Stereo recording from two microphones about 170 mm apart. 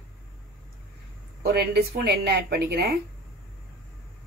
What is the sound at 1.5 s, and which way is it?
A woman's voice, 70° right (ahead or behind).